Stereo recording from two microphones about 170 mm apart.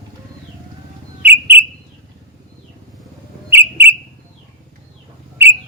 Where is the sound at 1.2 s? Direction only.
10° right (ahead or behind).